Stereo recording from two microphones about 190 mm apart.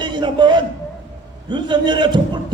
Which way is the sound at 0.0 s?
25° right (ahead or behind).